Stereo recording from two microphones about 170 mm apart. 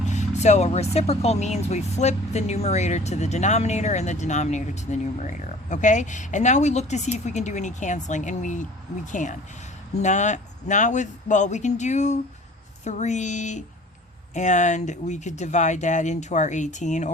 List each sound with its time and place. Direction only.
0.1 s speech: 45° left (ahead or behind)